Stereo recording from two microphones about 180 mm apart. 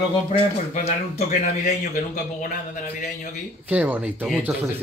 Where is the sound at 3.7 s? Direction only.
10° right (ahead or behind).